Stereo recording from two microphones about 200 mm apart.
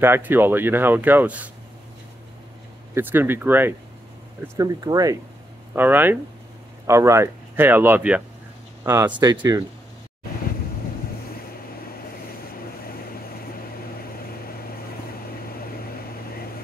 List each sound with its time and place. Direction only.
0.0 s speech: 10° right (ahead or behind)
2.9 s speech: 10° right (ahead or behind)
12.4 s vehicle: 50° left (ahead or behind)